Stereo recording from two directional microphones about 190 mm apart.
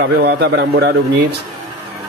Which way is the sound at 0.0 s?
55° right (ahead or behind).